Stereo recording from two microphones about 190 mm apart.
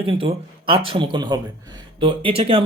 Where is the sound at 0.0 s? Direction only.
30° right (ahead or behind).